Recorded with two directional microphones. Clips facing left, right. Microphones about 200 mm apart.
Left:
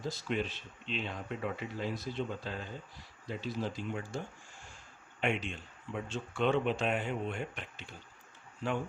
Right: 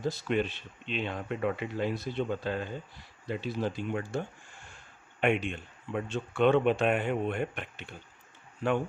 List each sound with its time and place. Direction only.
0.0 s speech: 60° right (ahead or behind)
5.2 s speech: 60° right (ahead or behind)